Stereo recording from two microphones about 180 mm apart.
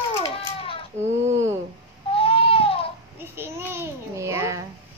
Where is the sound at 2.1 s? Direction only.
30° left (ahead or behind).